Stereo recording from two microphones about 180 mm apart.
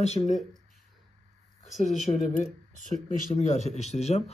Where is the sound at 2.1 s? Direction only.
30° left (ahead or behind).